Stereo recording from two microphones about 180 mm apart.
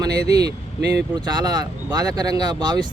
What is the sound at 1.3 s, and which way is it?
Speech, 25° right (ahead or behind).